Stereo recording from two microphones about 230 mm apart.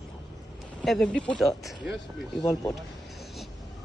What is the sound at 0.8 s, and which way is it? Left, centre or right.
Speech, centre.